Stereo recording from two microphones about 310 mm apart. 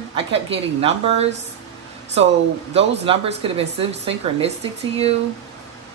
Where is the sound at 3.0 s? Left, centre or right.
Centre.